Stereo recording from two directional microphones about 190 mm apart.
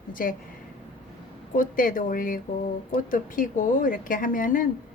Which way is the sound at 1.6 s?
45° left (ahead or behind).